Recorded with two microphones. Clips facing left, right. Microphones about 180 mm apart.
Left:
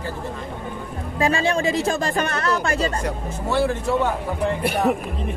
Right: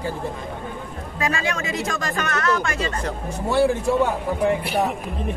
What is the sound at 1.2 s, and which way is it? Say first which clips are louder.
Speech: left 5 dB; 30° left (ahead or behind).